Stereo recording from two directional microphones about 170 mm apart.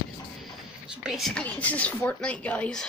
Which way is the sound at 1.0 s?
Centre (ahead or behind).